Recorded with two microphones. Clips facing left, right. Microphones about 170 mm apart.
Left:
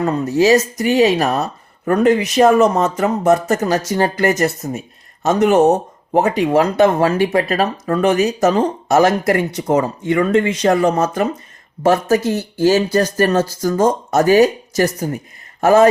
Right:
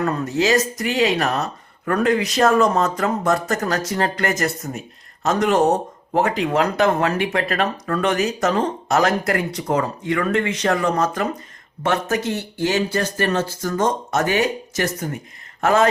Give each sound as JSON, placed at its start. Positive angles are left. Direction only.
{"t": 0.0, "sound": "speech", "side_deg": 25}